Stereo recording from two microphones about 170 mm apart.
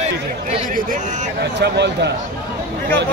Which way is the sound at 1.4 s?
90° right.